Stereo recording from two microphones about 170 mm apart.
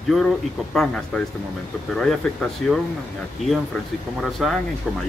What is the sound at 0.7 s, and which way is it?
Speech, centre (ahead or behind).